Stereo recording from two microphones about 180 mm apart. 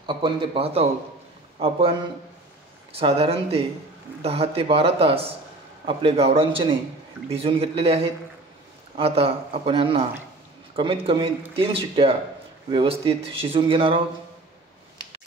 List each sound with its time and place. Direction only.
0.0 s speech: 30° right (ahead or behind)